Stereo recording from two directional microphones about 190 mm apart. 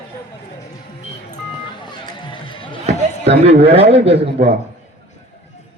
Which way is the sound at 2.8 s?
35° right (ahead or behind).